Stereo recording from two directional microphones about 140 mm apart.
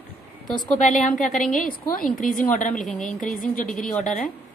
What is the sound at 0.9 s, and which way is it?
A woman's voice, 65° left (ahead or behind).